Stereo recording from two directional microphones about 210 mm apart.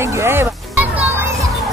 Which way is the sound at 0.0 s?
15° right (ahead or behind).